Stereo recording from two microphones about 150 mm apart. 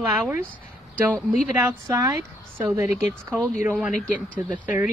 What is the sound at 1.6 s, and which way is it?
Speech, 20° right (ahead or behind).